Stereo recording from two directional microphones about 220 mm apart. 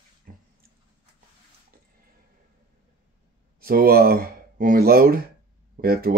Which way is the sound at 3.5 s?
45° right (ahead or behind).